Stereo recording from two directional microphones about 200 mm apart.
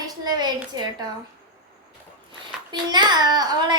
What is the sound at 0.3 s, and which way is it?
Speech, 20° right (ahead or behind).